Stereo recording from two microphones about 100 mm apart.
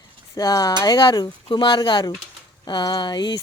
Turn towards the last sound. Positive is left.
turn(degrees=45)  # may be behind; listen again after turning